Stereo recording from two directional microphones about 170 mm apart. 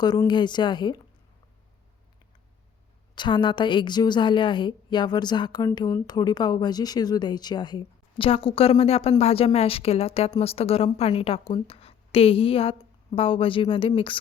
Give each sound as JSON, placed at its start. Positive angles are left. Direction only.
{"t": 0.0, "sound": "a woman's voice", "side_deg": 25}
{"t": 3.2, "sound": "a woman's voice", "side_deg": 25}